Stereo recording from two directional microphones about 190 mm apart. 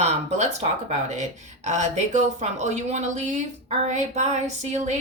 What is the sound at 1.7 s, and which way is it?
A woman's voice, 40° right (ahead or behind).